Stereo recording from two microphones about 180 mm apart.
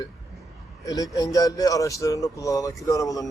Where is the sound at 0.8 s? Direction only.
20° left (ahead or behind).